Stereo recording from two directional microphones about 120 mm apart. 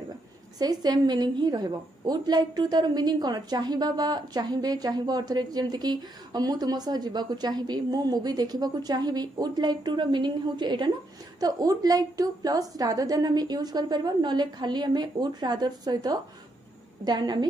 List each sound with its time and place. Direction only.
0.6 s a woman's voice: 35° right (ahead or behind)